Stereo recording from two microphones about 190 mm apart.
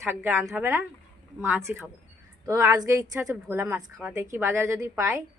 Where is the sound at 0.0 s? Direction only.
10° right (ahead or behind).